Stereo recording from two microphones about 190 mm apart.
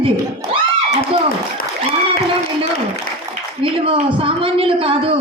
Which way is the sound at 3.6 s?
30° right (ahead or behind).